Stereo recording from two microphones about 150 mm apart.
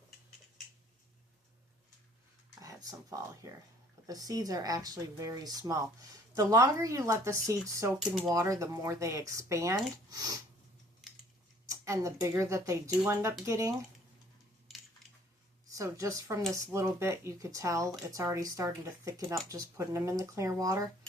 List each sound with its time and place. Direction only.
2.6 s speech: 20° right (ahead or behind)
7.9 s speech: centre (ahead or behind)
8.3 s speech: 20° right (ahead or behind)
11.0 s a sound: centre (ahead or behind)
11.7 s speech: 20° right (ahead or behind)
15.7 s speech: 20° right (ahead or behind)